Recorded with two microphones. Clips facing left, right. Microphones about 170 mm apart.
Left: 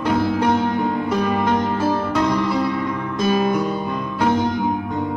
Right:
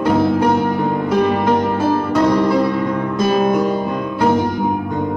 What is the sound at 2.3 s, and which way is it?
Music, 55° right (ahead or behind).